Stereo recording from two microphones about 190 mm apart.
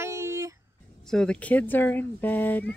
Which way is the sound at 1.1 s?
5° left (ahead or behind).